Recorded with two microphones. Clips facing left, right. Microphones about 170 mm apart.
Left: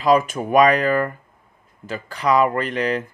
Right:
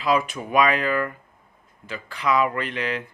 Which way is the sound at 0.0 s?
45° left (ahead or behind).